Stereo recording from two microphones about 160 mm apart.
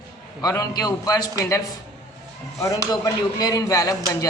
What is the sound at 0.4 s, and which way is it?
Speech, 25° left (ahead or behind).